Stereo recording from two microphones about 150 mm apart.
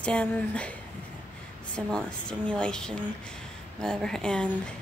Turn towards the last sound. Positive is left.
turn(degrees=5)  # may be behind; listen again after turning